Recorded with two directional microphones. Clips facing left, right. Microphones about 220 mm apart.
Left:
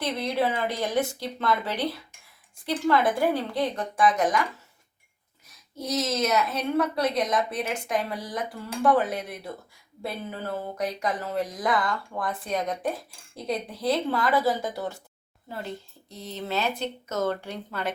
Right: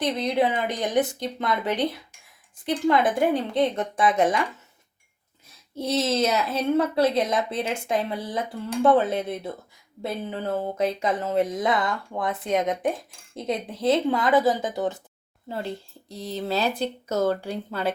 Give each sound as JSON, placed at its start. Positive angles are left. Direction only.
{"t": 0.0, "sound": "a woman's voice", "side_deg": -20}
{"t": 5.7, "sound": "a woman's voice", "side_deg": -30}
{"t": 15.4, "sound": "speech", "side_deg": -30}